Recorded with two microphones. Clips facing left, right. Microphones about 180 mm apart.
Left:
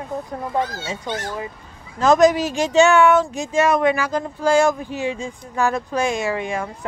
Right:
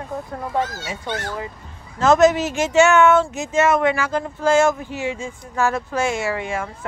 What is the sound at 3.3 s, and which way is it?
Speech, 20° right (ahead or behind).